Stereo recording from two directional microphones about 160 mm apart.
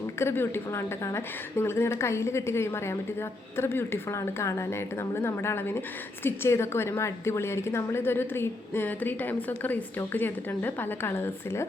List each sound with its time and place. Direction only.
0.2 s a woman's voice: 15° left (ahead or behind)